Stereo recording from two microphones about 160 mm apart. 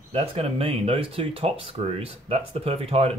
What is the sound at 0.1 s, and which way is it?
Speech, 40° right (ahead or behind).